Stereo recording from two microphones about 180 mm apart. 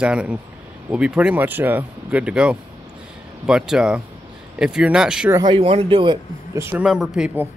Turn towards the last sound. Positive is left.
turn(degrees=-5)  # may be behind; listen again after turning